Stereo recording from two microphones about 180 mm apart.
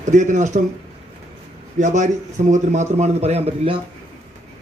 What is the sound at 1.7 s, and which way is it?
A man's voice, 40° right (ahead or behind).